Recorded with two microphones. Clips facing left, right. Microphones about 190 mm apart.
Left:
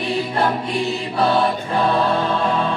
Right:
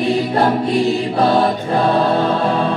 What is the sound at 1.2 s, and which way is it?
Music, 35° right (ahead or behind).